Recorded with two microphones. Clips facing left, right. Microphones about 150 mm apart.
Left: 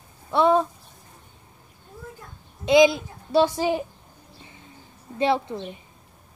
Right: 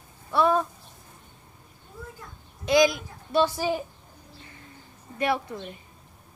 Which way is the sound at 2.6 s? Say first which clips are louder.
Left 4 dB; 20° left (ahead or behind).